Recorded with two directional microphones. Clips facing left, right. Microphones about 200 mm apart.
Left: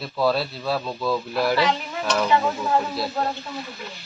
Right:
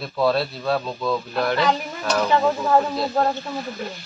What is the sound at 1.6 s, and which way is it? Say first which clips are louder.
Speech: right 1 dB; 40° right (ahead or behind).